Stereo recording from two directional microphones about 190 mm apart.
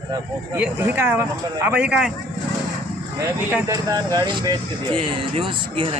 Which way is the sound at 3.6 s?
20° right (ahead or behind).